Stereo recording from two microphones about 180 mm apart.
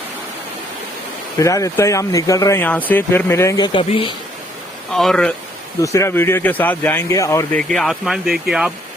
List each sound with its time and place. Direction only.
1.4 s speech: 20° left (ahead or behind)
3.7 s speech: 30° left (ahead or behind)
4.9 s speech: centre (ahead or behind)
5.8 s speech: 15° left (ahead or behind)
7.7 s speech: centre (ahead or behind)